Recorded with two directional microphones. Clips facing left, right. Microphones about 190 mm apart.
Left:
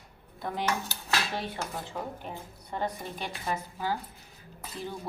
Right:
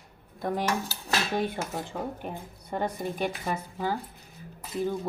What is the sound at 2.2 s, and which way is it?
Speech, 55° right (ahead or behind).